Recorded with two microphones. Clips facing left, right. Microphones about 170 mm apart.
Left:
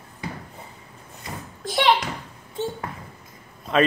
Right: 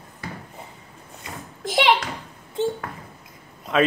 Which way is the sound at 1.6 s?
20° right (ahead or behind).